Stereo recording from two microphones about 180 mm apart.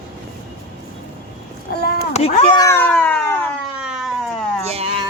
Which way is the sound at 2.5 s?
15° left (ahead or behind).